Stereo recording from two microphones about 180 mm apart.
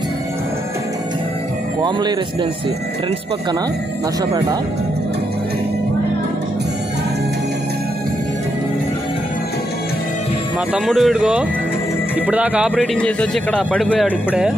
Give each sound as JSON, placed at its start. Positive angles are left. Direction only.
{"t": 1.8, "sound": "speech", "side_deg": -25}
{"t": 10.7, "sound": "speech", "side_deg": 0}
{"t": 12.9, "sound": "speech", "side_deg": 5}